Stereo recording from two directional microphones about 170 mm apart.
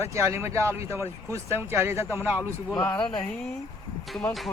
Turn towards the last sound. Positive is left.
turn(degrees=0)  # may be behind; listen again after turning